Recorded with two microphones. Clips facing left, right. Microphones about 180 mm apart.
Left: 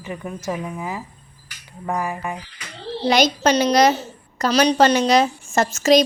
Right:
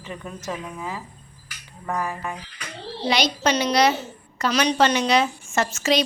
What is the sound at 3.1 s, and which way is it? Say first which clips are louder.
A woman's voice: left 5 dB; 45° left (ahead or behind).